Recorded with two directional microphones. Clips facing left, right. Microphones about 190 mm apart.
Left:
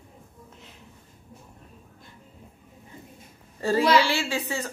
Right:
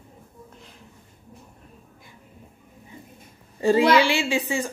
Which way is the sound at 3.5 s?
20° right (ahead or behind).